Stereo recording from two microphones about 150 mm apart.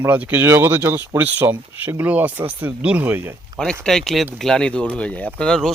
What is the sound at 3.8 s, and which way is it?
Speech, 5° left (ahead or behind).